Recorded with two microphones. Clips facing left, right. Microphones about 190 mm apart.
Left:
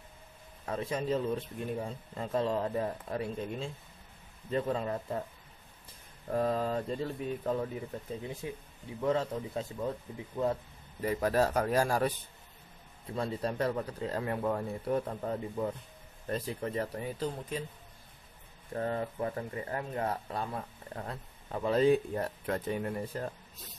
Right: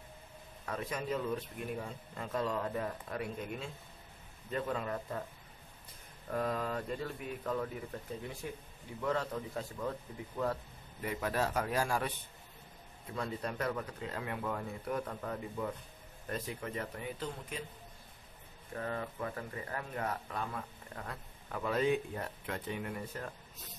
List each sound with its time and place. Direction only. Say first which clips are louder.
0.7 s speech: left 5 dB; 30° left (ahead or behind)
6.3 s speech: left 5 dB; 30° left (ahead or behind)
9.0 s speech: left 4 dB; 25° left (ahead or behind)
11.0 s speech: left 6 dB; 35° left (ahead or behind)
13.1 s speech: left 5 dB; 30° left (ahead or behind)
18.8 s speech: left 5 dB; 30° left (ahead or behind)